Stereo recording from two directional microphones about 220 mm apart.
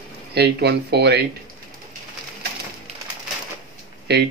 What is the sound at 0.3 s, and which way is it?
Speech, 50° right (ahead or behind).